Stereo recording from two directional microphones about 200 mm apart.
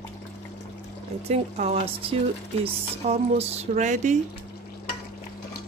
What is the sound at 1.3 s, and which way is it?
Speech, 30° right (ahead or behind).